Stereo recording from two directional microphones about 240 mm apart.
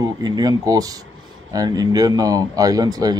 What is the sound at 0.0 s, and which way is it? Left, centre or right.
Speech, centre.